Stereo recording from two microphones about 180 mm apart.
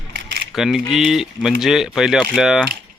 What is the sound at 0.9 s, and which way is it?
Speech, centre (ahead or behind).